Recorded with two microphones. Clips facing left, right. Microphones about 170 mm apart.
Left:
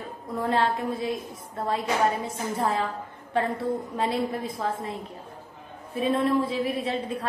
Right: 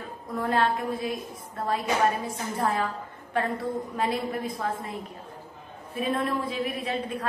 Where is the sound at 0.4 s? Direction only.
25° left (ahead or behind).